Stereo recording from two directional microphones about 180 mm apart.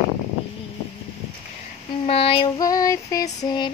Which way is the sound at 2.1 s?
30° left (ahead or behind).